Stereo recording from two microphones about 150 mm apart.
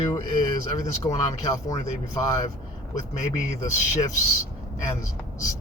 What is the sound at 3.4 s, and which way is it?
Speech, 55° left (ahead or behind).